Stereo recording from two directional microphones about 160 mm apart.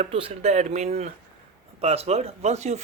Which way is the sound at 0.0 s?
40° right (ahead or behind).